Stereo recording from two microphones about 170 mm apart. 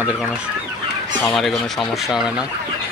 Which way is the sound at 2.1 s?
5° right (ahead or behind).